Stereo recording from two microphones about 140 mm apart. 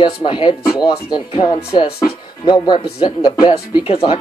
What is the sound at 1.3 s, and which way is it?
Speech, 30° left (ahead or behind).